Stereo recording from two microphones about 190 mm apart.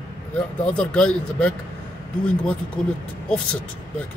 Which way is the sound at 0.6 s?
5° left (ahead or behind).